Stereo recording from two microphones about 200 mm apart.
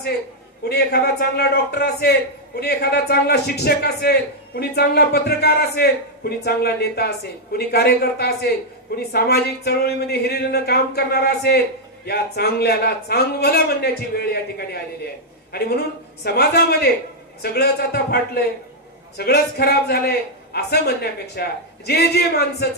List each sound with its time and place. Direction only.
0.6 s a man's voice: 55° left (ahead or behind)
15.5 s a man's voice: 50° left (ahead or behind)